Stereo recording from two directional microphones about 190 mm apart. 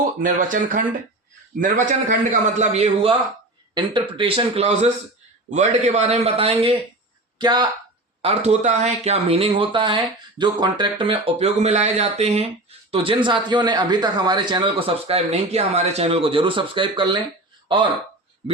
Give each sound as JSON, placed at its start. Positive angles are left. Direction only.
{"t": 0.2, "sound": "speech", "side_deg": -45}
{"t": 4.2, "sound": "a man's voice", "side_deg": -25}
{"t": 8.2, "sound": "a man's voice", "side_deg": -35}
{"t": 18.4, "sound": "speech", "side_deg": -30}